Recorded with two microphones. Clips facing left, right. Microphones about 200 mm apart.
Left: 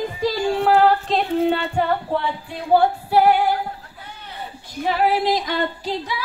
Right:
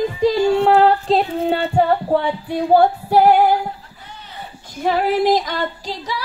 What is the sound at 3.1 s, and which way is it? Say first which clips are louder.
Female singing: right 3 dB; 50° right (ahead or behind).